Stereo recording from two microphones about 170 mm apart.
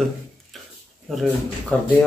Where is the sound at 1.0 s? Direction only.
Centre (ahead or behind).